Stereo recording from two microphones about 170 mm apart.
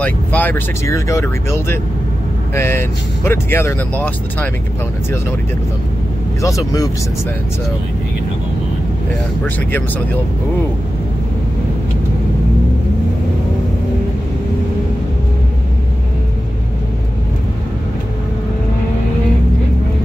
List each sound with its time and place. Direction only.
0.0 s speech: 10° left (ahead or behind)
6.4 s speech: 20° left (ahead or behind)
9.4 s speech: 10° left (ahead or behind)